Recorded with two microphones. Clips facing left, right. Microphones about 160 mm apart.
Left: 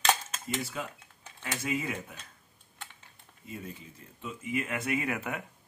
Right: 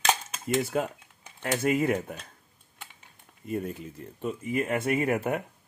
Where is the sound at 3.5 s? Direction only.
60° right (ahead or behind).